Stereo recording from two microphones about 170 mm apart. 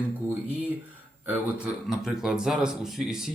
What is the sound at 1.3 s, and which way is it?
Speech, 5° right (ahead or behind).